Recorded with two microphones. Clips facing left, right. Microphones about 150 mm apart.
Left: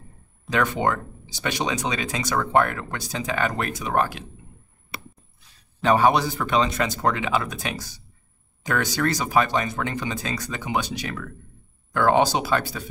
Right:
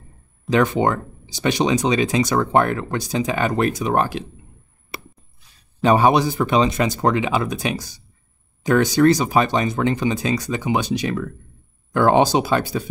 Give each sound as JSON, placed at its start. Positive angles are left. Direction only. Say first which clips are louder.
{"t": 0.5, "sound": "speech", "louder": "right 5 dB", "side_deg": -25}
{"t": 5.8, "sound": "speech", "louder": "right 3 dB", "side_deg": -15}